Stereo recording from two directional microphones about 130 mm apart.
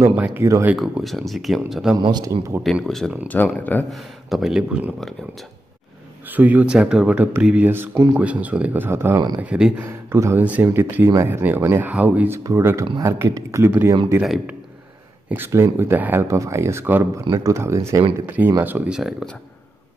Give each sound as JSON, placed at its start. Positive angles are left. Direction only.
{"t": 0.1, "sound": "speech", "side_deg": -15}
{"t": 0.7, "sound": "speech", "side_deg": 0}
{"t": 2.0, "sound": "speech", "side_deg": -35}
{"t": 2.6, "sound": "speech", "side_deg": 0}
{"t": 6.3, "sound": "speech", "side_deg": -10}
{"t": 9.8, "sound": "speech", "side_deg": -20}
{"t": 12.4, "sound": "speech", "side_deg": -20}
{"t": 15.2, "sound": "speech", "side_deg": -15}